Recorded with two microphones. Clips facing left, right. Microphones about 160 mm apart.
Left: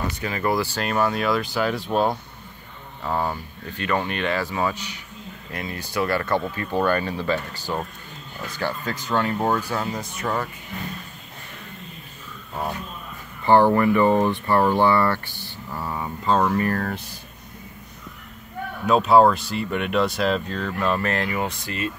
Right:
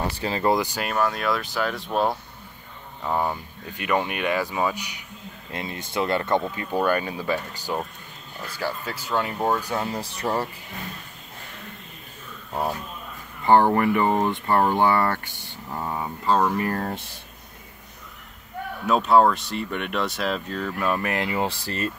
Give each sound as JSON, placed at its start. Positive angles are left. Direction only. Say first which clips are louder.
{"t": 0.1, "sound": "speech", "louder": "right 2 dB", "side_deg": -30}
{"t": 0.8, "sound": "speech", "louder": "left 4 dB", "side_deg": 0}
{"t": 3.0, "sound": "speech", "louder": "even", "side_deg": -10}
{"t": 9.9, "sound": "speech", "louder": "right 1 dB", "side_deg": -30}
{"t": 13.5, "sound": "speech", "louder": "left 1 dB", "side_deg": -20}
{"t": 15.4, "sound": "a sound", "louder": "even", "side_deg": -20}
{"t": 16.3, "sound": "speech", "louder": "left 1 dB", "side_deg": -5}
{"t": 16.5, "sound": "speech", "louder": "left 2 dB", "side_deg": -25}
{"t": 18.9, "sound": "speech", "louder": "left 2 dB", "side_deg": 0}